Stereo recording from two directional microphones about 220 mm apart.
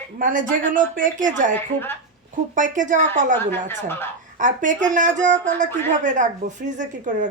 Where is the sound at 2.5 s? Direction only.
35° right (ahead or behind).